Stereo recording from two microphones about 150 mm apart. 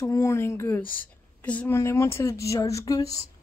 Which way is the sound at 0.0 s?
20° left (ahead or behind).